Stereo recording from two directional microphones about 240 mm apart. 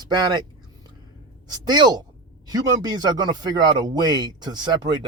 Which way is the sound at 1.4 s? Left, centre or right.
Centre.